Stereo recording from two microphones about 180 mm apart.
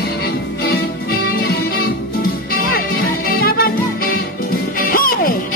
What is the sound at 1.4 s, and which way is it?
Music, 60° left (ahead or behind).